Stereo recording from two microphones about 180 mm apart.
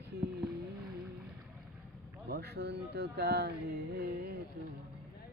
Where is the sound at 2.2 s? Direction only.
60° right (ahead or behind).